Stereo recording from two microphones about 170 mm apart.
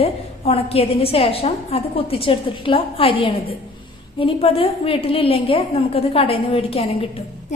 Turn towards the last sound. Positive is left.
turn(degrees=35)  # may be behind; listen again after turning